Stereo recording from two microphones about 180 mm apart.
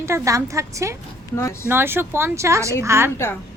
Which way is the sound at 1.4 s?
15° left (ahead or behind).